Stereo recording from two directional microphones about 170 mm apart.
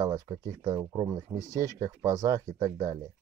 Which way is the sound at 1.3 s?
20° right (ahead or behind).